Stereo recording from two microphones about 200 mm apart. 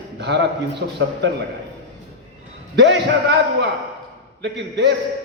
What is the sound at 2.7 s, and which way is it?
A man's voice, 60° right (ahead or behind).